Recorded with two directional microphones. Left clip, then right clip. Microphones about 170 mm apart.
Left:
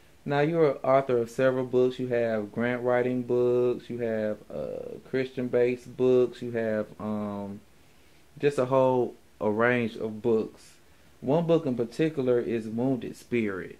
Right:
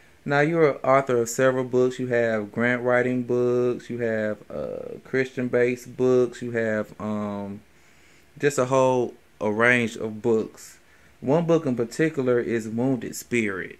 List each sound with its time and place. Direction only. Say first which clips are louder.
0.3 s speech: right 4 dB; 20° right (ahead or behind)
13.3 s speech: right 4 dB; 10° right (ahead or behind)